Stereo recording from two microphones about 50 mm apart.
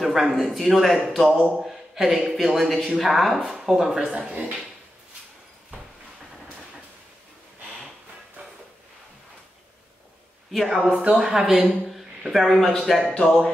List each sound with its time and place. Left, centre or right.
0.0 s speech: centre
1.6 s a sound: centre
2.3 s speech: centre
4.0 s speech: right
10.7 s speech: centre
11.6 s a sound: centre
12.4 s speech: centre
13.1 s speech: centre